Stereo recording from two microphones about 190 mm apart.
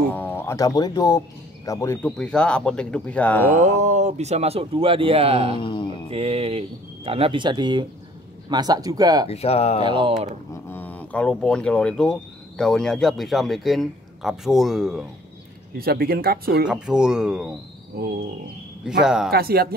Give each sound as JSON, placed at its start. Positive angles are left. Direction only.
{"t": 0.1, "sound": "speech", "side_deg": 10}
{"t": 2.1, "sound": "speech", "side_deg": 5}
{"t": 3.5, "sound": "speech", "side_deg": -40}
{"t": 5.6, "sound": "speech", "side_deg": 25}
{"t": 6.0, "sound": "speech", "side_deg": -30}
{"t": 9.3, "sound": "speech", "side_deg": 30}
{"t": 9.8, "sound": "speech", "side_deg": -25}
{"t": 10.5, "sound": "speech", "side_deg": 10}
{"t": 15.8, "sound": "speech", "side_deg": -55}
{"t": 16.6, "sound": "speech", "side_deg": -5}
{"t": 18.0, "sound": "speech", "side_deg": -55}
{"t": 19.0, "sound": "speech", "side_deg": -5}
{"t": 19.3, "sound": "speech", "side_deg": -55}